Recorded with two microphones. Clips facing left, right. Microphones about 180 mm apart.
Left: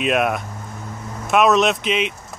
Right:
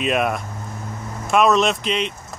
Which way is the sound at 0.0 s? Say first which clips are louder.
Left 1 dB; centre (ahead or behind).